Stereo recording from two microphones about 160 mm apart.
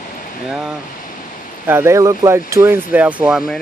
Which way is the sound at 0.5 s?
Centre (ahead or behind).